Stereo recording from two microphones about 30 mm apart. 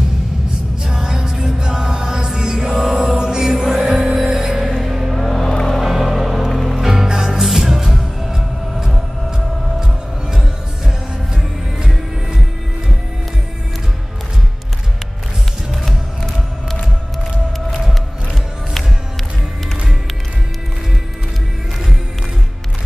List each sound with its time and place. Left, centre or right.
0.8 s music: centre
2.9 s music: right
5.1 s music: centre
5.8 s music: centre